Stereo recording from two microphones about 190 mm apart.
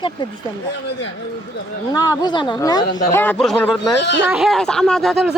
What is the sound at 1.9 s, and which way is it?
Speech, 20° left (ahead or behind).